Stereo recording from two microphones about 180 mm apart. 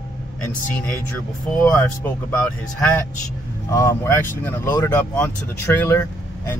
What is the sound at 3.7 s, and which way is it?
Speech, 15° left (ahead or behind).